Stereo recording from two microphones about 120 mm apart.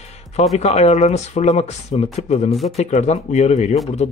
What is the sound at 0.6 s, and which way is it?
Speech, 65° left (ahead or behind).